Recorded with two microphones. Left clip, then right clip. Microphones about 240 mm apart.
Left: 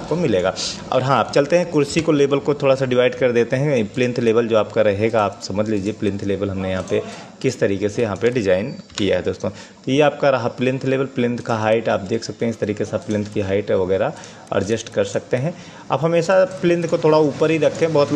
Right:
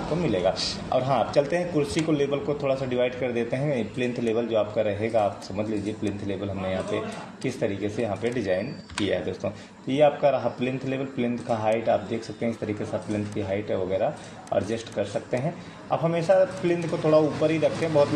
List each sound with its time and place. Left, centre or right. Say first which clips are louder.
0.2 s speech: left 5 dB; left